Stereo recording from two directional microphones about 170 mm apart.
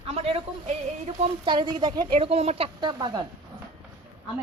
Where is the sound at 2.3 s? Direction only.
35° right (ahead or behind).